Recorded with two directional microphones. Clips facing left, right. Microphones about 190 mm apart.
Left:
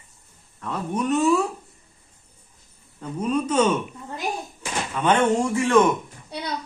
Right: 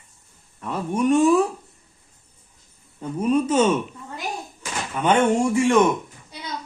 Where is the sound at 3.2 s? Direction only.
10° right (ahead or behind).